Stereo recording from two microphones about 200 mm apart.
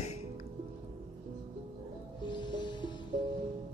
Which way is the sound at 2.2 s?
25° left (ahead or behind).